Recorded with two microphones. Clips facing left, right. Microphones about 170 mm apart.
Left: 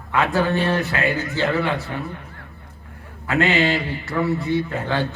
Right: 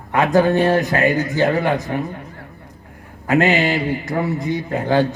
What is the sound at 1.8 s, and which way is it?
Speech, 15° right (ahead or behind).